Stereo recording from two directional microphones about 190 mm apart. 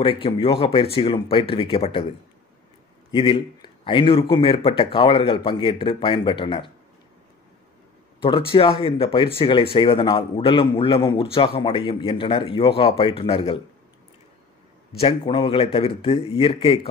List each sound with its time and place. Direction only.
0.0 s speech: 30° left (ahead or behind)
3.1 s speech: 25° left (ahead or behind)
8.2 s speech: 30° left (ahead or behind)
15.0 s speech: 30° left (ahead or behind)